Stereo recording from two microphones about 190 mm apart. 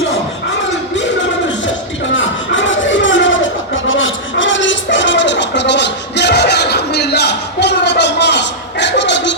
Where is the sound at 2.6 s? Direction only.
80° left.